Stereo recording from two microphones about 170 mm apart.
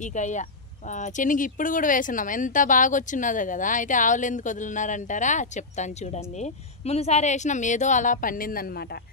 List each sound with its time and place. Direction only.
0.0 s speech: 45° left (ahead or behind)